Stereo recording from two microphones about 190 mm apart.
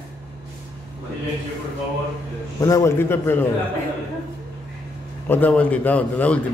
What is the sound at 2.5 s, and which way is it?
Speech, 15° left (ahead or behind).